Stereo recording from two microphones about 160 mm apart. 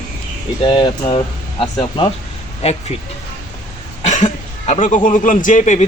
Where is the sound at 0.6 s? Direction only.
30° left (ahead or behind).